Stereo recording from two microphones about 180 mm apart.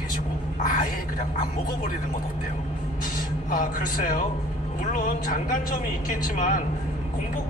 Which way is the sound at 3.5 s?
50° left (ahead or behind).